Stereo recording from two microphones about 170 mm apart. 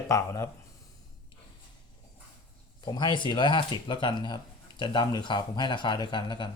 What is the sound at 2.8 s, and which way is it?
Speech, 25° left (ahead or behind).